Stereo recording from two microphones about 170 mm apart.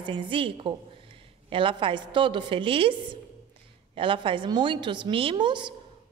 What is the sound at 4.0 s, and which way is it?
A woman's voice, 30° right (ahead or behind).